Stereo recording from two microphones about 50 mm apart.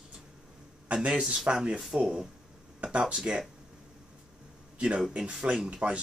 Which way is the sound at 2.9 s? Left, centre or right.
Right.